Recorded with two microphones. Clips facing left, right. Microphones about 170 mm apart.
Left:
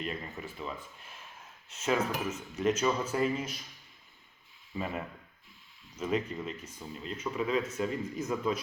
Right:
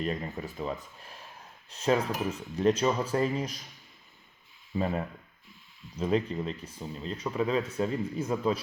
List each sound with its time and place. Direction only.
0.0 s speech: 40° right (ahead or behind)
6.0 s speech: 30° right (ahead or behind)